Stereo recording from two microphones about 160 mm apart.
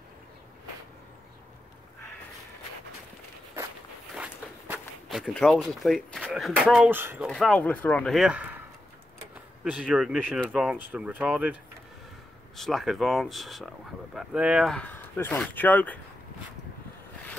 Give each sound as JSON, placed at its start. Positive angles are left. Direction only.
{"t": 4.2, "sound": "speech", "side_deg": -5}
{"t": 7.2, "sound": "speech", "side_deg": 5}
{"t": 9.7, "sound": "speech", "side_deg": -5}
{"t": 12.5, "sound": "speech", "side_deg": 0}